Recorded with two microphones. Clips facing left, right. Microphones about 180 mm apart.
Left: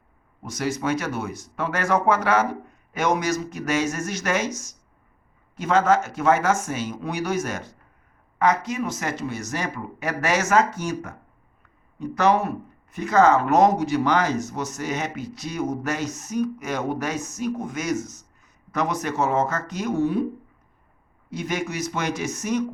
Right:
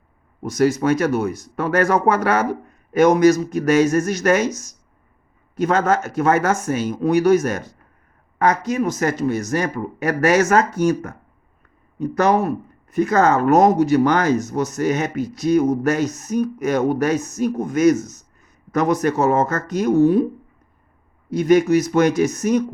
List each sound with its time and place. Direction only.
0.5 s speech: 45° right (ahead or behind)
21.3 s speech: 40° right (ahead or behind)